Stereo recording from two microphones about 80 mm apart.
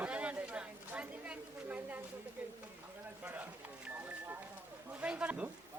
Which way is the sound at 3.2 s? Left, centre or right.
Right.